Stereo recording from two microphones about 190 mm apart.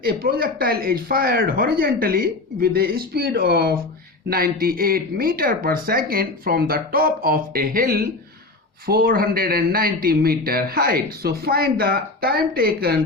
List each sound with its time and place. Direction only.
0.0 s speech: 50° right (ahead or behind)